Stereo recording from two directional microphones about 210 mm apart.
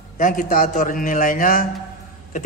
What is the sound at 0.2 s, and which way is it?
A man's voice, 40° left (ahead or behind).